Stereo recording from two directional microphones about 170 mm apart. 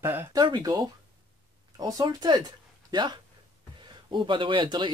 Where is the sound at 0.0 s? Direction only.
15° right (ahead or behind).